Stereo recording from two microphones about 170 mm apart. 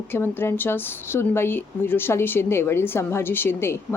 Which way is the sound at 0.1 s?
15° left (ahead or behind).